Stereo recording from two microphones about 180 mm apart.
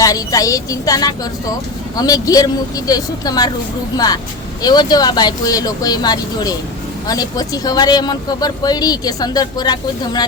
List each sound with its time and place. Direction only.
0.0 s speech: 20° left (ahead or behind)